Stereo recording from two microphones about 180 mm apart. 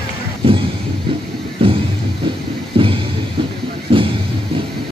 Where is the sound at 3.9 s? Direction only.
30° right (ahead or behind).